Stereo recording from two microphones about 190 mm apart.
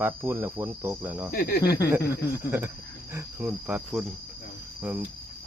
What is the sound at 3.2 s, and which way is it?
Cricket, 10° right (ahead or behind).